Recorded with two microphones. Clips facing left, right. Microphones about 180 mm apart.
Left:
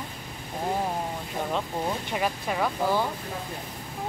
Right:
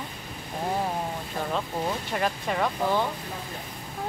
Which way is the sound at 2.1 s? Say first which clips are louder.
Right 1 dB; 5° left (ahead or behind).